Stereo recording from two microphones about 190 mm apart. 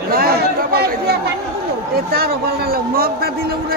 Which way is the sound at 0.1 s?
55° right (ahead or behind).